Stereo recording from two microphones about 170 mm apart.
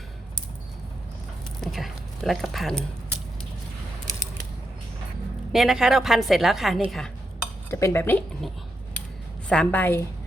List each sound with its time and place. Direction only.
1.6 s speech: centre (ahead or behind)
5.5 s a woman's voice: centre (ahead or behind)
7.7 s a woman's voice: 15° left (ahead or behind)
9.5 s a woman's voice: 10° left (ahead or behind)